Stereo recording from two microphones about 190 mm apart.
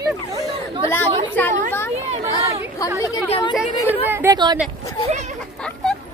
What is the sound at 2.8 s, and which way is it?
Speech, 20° left (ahead or behind).